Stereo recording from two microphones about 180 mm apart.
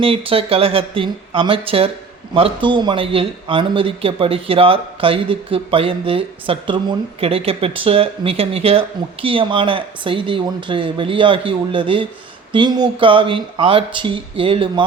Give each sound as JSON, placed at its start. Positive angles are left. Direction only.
{"t": 0.0, "sound": "speech", "side_deg": -30}